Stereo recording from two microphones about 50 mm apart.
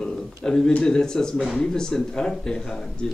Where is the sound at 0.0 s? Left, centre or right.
Centre.